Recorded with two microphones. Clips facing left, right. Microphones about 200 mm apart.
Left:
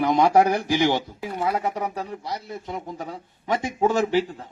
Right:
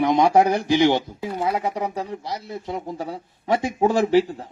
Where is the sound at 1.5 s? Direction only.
Centre (ahead or behind).